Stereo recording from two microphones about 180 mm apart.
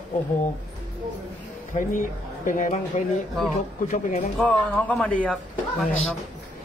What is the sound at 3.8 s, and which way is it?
Speech, 45° left (ahead or behind).